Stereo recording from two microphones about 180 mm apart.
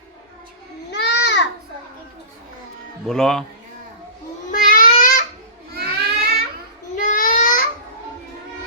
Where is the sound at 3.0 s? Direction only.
5° left (ahead or behind).